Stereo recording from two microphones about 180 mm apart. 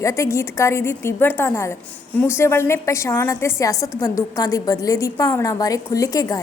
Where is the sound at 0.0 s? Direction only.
15° left (ahead or behind).